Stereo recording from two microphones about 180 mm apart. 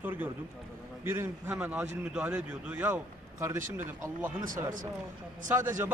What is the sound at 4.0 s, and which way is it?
Speech, 15° right (ahead or behind).